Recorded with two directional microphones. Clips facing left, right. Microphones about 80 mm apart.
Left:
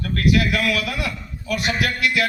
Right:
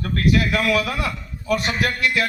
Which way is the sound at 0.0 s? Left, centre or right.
Right.